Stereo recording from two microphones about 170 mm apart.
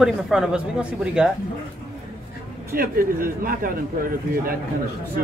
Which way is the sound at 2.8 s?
55° right (ahead or behind).